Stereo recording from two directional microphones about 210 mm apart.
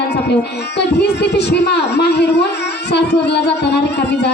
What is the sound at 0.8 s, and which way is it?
Speech, 55° left (ahead or behind).